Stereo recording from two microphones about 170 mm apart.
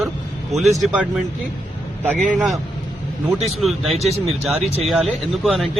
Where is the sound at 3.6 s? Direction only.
Centre (ahead or behind).